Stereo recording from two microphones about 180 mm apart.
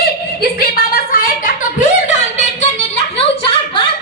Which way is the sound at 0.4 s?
55° left (ahead or behind).